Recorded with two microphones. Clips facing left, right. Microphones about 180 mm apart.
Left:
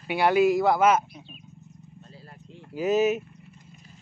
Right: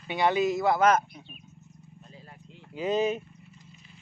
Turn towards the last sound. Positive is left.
turn(degrees=5)  # may be behind; listen again after turning